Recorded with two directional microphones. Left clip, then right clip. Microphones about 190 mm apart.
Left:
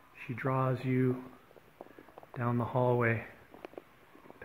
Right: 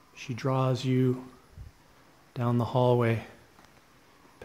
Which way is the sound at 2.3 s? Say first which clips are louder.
Right 4 dB; 30° right (ahead or behind).